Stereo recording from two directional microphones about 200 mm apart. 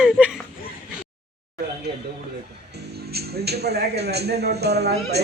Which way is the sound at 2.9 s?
50° right (ahead or behind).